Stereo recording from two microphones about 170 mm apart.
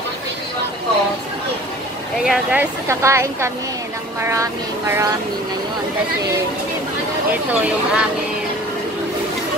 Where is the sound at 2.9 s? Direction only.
15° right (ahead or behind).